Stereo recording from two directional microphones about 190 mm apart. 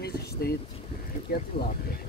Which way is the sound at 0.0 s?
55° left (ahead or behind).